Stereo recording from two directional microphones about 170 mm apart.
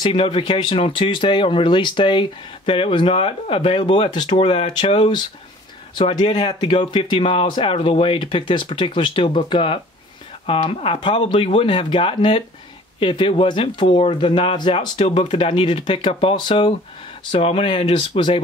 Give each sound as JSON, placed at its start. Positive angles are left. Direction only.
{"t": 0.0, "sound": "speech", "side_deg": 30}